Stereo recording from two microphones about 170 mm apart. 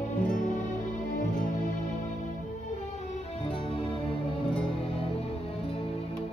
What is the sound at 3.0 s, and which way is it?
Music, 40° left (ahead or behind).